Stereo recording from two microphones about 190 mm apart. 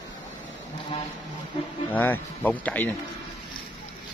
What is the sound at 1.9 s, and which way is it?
Speech, 10° left (ahead or behind).